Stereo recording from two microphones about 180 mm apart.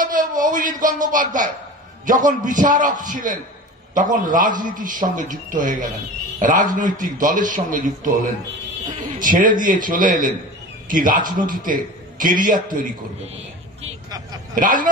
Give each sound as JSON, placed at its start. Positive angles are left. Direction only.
{"t": 0.0, "sound": "a sound", "side_deg": -50}
{"t": 2.0, "sound": "a man's voice", "side_deg": -45}
{"t": 14.5, "sound": "a man's voice", "side_deg": -50}